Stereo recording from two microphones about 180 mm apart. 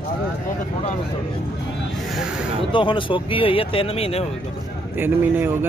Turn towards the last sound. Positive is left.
turn(degrees=-10)  # may be behind; listen again after turning